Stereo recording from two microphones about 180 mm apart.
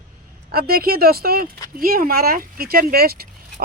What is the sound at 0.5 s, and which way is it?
Speech, 55° right (ahead or behind).